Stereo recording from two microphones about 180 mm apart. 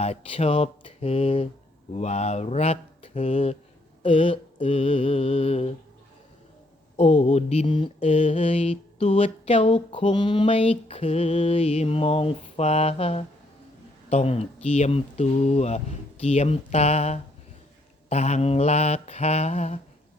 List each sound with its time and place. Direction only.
0.0 s mantra: 35° left (ahead or behind)
6.9 s mantra: 40° left (ahead or behind)